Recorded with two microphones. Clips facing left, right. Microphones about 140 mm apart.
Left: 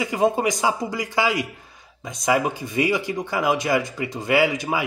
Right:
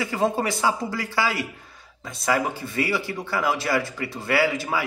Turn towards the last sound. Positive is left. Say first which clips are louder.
# left 2 dB
turn(degrees=20)  # may be behind; listen again after turning